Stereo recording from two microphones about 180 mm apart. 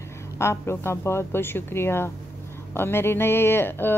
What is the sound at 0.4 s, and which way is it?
A woman's voice, 15° left (ahead or behind).